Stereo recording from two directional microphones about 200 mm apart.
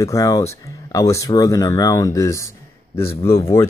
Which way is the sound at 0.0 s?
15° left (ahead or behind).